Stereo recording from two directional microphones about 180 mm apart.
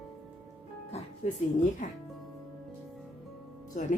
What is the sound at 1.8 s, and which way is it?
Speech, 45° left (ahead or behind).